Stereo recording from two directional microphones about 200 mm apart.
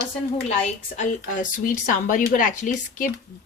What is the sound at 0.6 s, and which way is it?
A woman's voice, 40° left (ahead or behind).